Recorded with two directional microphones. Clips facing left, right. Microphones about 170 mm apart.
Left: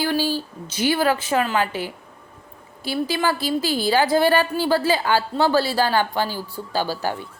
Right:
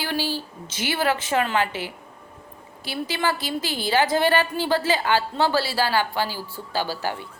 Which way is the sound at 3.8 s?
35° left (ahead or behind).